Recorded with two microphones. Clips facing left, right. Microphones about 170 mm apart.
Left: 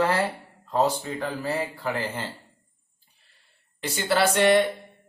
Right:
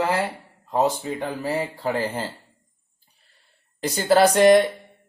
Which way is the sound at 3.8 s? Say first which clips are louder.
Right 6 dB; 40° right (ahead or behind).